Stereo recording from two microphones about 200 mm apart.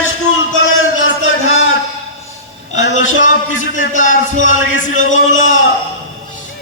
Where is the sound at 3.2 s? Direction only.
40° left (ahead or behind).